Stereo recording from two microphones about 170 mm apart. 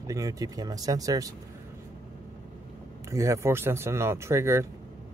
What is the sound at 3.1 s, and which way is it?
Speech, 15° right (ahead or behind).